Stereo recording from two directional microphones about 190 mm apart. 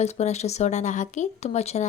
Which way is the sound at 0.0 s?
35° left (ahead or behind).